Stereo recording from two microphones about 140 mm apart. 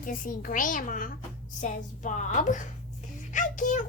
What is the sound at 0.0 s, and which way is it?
A woman's voice, 70° left (ahead or behind).